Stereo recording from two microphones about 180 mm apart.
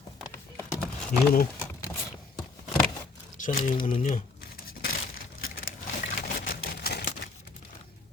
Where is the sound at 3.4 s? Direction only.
50° left (ahead or behind).